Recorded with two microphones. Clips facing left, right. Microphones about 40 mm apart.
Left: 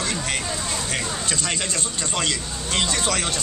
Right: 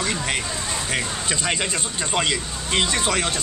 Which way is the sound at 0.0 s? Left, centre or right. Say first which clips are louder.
Right 2 dB; centre.